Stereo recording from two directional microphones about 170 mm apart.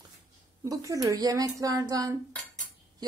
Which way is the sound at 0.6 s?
20° right (ahead or behind).